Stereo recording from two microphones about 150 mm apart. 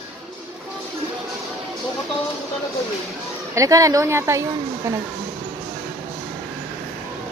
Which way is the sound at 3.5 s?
20° right (ahead or behind).